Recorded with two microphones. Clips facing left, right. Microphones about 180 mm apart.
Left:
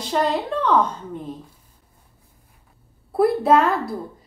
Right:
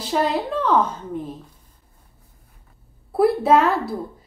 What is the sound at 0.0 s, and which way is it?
Speech, 5° right (ahead or behind).